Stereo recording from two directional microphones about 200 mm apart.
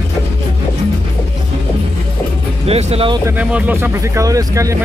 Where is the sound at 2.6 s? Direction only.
30° right (ahead or behind).